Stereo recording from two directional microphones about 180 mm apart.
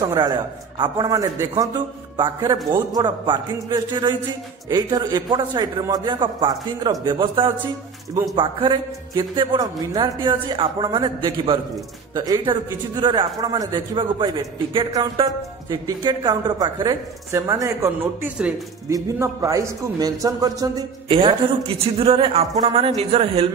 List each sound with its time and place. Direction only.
0.0 s speech: 25° right (ahead or behind)